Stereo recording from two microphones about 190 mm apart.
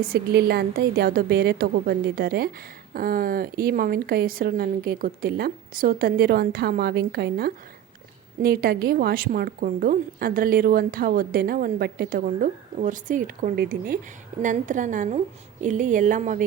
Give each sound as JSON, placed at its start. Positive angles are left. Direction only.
{"t": 0.0, "sound": "a woman's voice", "side_deg": -55}